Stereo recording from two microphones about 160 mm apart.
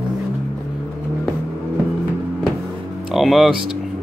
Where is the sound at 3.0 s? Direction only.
Centre (ahead or behind).